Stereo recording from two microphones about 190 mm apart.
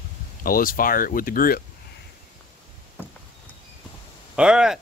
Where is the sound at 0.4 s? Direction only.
50° left (ahead or behind).